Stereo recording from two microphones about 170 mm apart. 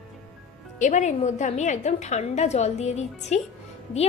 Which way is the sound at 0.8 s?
45° left (ahead or behind).